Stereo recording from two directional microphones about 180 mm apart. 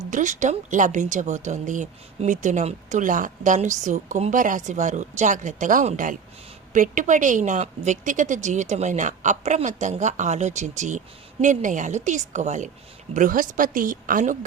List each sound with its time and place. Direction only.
0.1 s a woman's voice: 45° right (ahead or behind)